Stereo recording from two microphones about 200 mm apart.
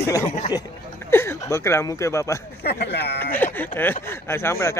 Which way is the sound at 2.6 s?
55° left (ahead or behind).